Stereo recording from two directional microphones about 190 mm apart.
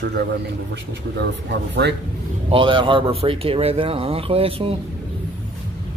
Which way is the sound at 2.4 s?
25° right (ahead or behind).